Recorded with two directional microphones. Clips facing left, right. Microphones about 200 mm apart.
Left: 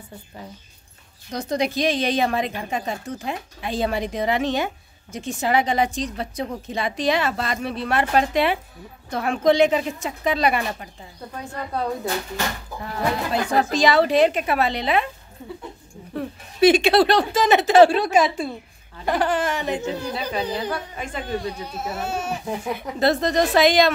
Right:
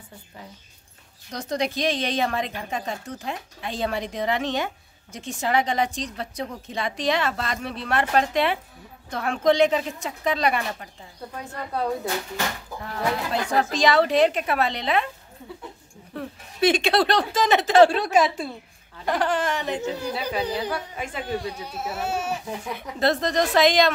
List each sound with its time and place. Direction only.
1.3 s a woman's voice: 5° left (ahead or behind)
11.3 s speech: 5° right (ahead or behind)
12.8 s speech: 5° left (ahead or behind)
16.2 s speech: 5° left (ahead or behind)
19.8 s speech: 5° right (ahead or behind)
22.8 s a woman's voice: 5° left (ahead or behind)